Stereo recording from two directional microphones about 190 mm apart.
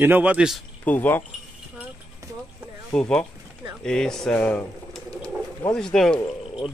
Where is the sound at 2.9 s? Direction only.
5° left (ahead or behind).